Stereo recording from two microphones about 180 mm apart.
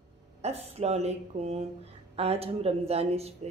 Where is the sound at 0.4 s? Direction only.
35° right (ahead or behind).